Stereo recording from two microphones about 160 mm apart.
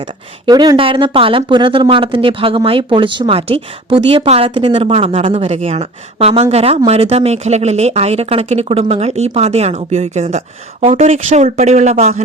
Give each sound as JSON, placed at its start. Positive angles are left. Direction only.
{"t": 0.4, "sound": "speech", "side_deg": -25}